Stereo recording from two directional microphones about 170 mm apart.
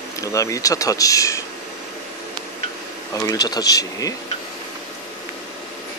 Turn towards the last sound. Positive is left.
turn(degrees=20)  # may be behind; listen again after turning